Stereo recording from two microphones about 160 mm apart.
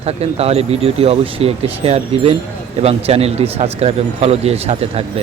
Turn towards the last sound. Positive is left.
turn(degrees=-40)  # may be behind; listen again after turning